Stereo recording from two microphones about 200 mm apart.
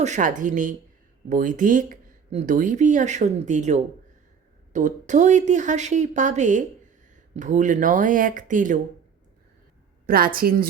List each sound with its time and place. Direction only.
0.0 s speech: 40° right (ahead or behind)
10.1 s a woman's voice: 45° right (ahead or behind)